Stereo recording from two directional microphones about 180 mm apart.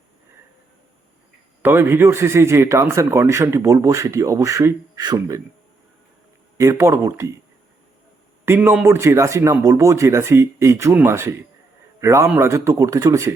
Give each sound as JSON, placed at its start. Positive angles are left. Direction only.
{"t": 1.6, "sound": "speech", "side_deg": -15}
{"t": 6.6, "sound": "speech", "side_deg": -15}
{"t": 8.4, "sound": "speech", "side_deg": -10}